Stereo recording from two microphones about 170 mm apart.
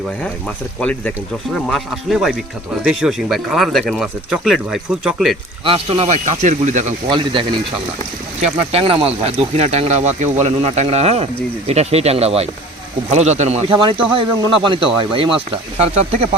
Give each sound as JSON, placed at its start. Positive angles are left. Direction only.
{"t": 0.2, "sound": "speech", "side_deg": 5}
{"t": 5.6, "sound": "speech", "side_deg": -30}
{"t": 7.1, "sound": "speech", "side_deg": -30}